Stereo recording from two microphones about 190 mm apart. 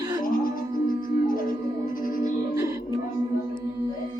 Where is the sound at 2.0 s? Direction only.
45° left (ahead or behind).